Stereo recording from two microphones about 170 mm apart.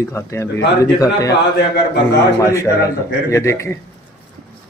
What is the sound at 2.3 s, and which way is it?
A man's voice, 15° left (ahead or behind).